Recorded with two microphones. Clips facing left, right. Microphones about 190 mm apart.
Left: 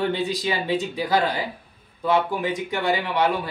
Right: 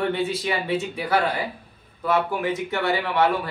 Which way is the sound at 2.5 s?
15° left (ahead or behind).